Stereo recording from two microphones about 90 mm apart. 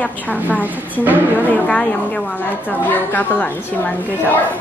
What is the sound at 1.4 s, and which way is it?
A woman's voice, 15° left (ahead or behind).